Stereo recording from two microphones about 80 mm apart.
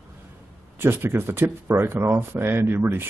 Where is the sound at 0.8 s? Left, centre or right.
Right.